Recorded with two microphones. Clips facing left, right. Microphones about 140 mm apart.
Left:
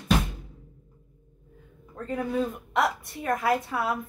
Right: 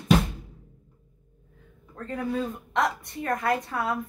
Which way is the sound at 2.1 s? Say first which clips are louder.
Left 1 dB; 5° left (ahead or behind).